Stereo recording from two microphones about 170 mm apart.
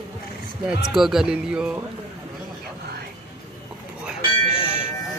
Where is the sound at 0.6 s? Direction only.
5° right (ahead or behind).